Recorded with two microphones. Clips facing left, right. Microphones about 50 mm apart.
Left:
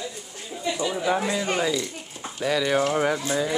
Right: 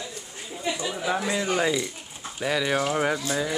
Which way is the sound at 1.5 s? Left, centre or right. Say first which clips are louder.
Even; centre.